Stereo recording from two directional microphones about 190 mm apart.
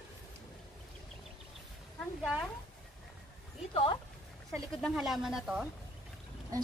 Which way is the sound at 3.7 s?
30° left (ahead or behind).